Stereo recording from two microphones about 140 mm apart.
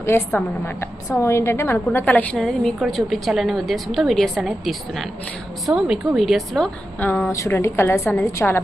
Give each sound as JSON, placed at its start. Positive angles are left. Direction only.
{"t": 0.3, "sound": "a woman's voice", "side_deg": 15}
{"t": 7.0, "sound": "a woman's voice", "side_deg": 15}